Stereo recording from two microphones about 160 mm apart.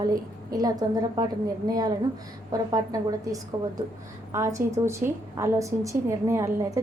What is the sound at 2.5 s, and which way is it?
A woman's voice, 20° right (ahead or behind).